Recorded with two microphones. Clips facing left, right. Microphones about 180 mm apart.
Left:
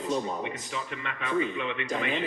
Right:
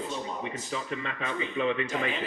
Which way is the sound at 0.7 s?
35° right (ahead or behind).